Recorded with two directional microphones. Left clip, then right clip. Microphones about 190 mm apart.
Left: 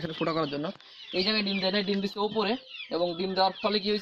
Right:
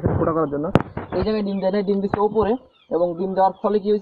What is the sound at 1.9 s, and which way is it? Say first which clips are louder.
Speech: right 10 dB; 35° left (ahead or behind).